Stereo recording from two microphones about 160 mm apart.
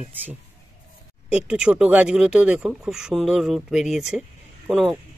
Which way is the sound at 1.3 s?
5° right (ahead or behind).